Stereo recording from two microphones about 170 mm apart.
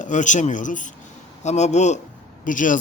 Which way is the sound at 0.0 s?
45° left (ahead or behind).